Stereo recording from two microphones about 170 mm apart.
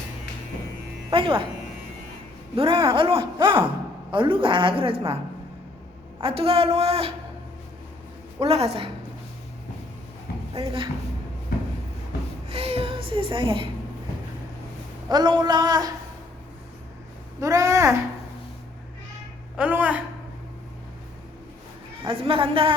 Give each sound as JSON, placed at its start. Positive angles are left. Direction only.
{"t": 1.1, "sound": "a woman's voice", "side_deg": -30}
{"t": 2.6, "sound": "a woman's voice", "side_deg": -30}
{"t": 6.1, "sound": "a woman's voice", "side_deg": -35}
{"t": 8.4, "sound": "a woman's voice", "side_deg": -35}
{"t": 10.6, "sound": "a woman's voice", "side_deg": -30}
{"t": 12.5, "sound": "a sound", "side_deg": -35}
{"t": 15.1, "sound": "speech", "side_deg": -25}
{"t": 17.4, "sound": "speech", "side_deg": -20}
{"t": 19.5, "sound": "a woman's voice", "side_deg": -10}
{"t": 22.0, "sound": "a woman's voice", "side_deg": -30}